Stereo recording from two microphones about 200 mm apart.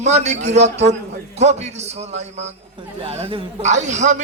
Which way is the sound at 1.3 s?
35° right (ahead or behind).